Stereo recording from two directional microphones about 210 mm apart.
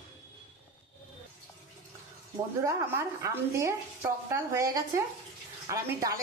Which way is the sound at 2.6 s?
15° right (ahead or behind).